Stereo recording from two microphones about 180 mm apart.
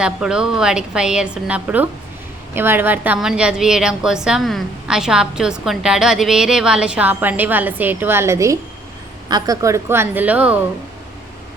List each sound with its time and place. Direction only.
0.0 s a woman's voice: 5° right (ahead or behind)